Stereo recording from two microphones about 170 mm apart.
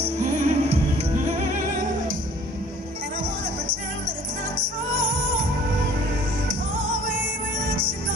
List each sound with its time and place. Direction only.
0.0 s music: 45° right (ahead or behind)